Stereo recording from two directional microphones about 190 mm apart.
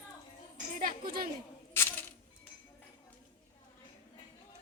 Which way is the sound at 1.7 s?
10° left (ahead or behind).